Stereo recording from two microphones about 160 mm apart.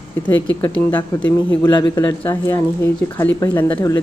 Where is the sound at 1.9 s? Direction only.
15° left (ahead or behind).